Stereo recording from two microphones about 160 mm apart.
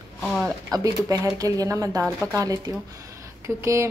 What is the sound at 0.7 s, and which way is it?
A woman's voice, 20° right (ahead or behind).